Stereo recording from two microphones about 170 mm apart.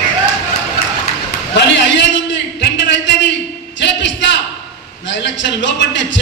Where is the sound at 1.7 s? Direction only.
90° left.